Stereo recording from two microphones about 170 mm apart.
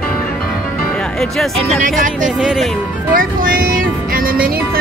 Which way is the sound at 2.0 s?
50° right (ahead or behind).